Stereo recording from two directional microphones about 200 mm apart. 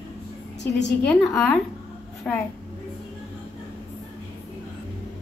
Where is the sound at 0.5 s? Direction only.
60° left (ahead or behind).